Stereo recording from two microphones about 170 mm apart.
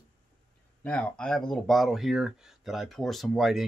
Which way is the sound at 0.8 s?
5° left (ahead or behind).